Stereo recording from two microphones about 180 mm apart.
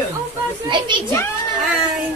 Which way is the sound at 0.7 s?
25° right (ahead or behind).